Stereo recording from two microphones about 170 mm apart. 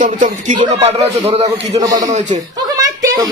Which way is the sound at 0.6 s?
35° right (ahead or behind).